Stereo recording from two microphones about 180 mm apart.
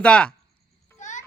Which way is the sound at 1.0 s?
45° left (ahead or behind).